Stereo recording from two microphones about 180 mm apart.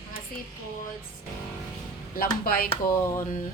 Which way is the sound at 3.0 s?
15° left (ahead or behind).